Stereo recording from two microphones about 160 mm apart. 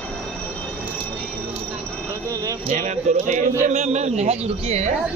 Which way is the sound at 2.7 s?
50° right (ahead or behind).